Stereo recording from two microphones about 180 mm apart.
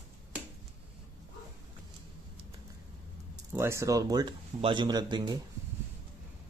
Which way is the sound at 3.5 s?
15° right (ahead or behind).